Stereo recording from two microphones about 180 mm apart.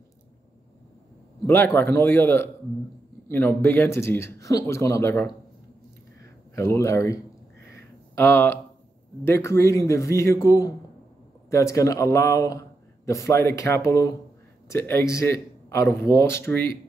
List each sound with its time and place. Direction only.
1.4 s a man's voice: 15° left (ahead or behind)
6.5 s a man's voice: 15° left (ahead or behind)
7.7 s a sound: 10° left (ahead or behind)
9.2 s a man's voice: 15° left (ahead or behind)